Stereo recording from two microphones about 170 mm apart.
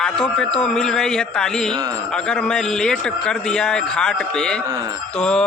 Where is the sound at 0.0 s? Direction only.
5° left (ahead or behind).